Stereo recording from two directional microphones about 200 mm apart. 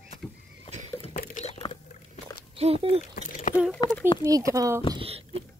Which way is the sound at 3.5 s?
40° left (ahead or behind).